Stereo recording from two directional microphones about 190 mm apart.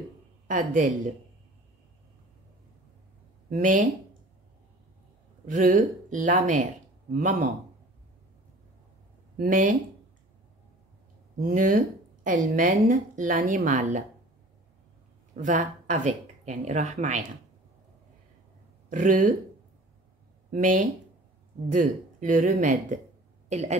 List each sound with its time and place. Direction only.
0.5 s a woman's voice: 45° right (ahead or behind)
3.4 s speech: 45° right (ahead or behind)
5.5 s speech: 45° right (ahead or behind)
9.4 s a woman's voice: 45° right (ahead or behind)
11.3 s a woman's voice: 50° right (ahead or behind)
15.3 s speech: 40° right (ahead or behind)
18.9 s a woman's voice: 45° right (ahead or behind)
20.5 s a woman's voice: 45° right (ahead or behind)